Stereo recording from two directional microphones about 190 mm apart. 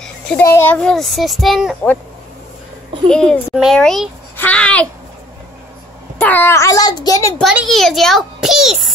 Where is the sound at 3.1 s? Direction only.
5° left (ahead or behind).